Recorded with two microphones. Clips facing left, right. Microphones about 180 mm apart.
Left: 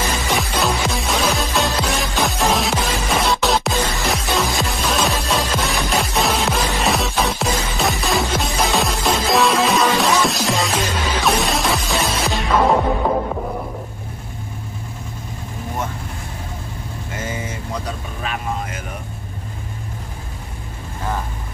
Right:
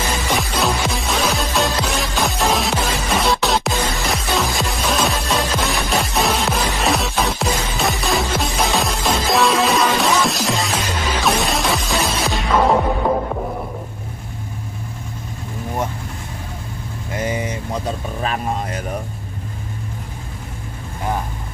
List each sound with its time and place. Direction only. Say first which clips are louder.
0.3 s music: right 1 dB; centre (ahead or behind)
17.2 s vehicle: right 5 dB; 20° right (ahead or behind)
18.2 s a sound: right 2 dB; 35° right (ahead or behind)